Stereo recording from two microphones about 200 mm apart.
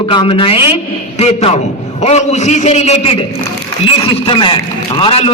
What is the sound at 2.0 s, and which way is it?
A man's voice, 35° left (ahead or behind).